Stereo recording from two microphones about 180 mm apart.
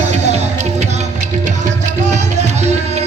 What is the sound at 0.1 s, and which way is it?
Music, 35° right (ahead or behind).